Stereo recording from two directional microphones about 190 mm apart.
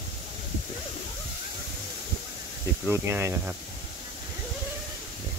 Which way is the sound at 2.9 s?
15° right (ahead or behind).